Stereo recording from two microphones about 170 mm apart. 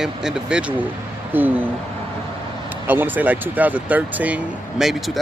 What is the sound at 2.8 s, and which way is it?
Speech, 10° right (ahead or behind).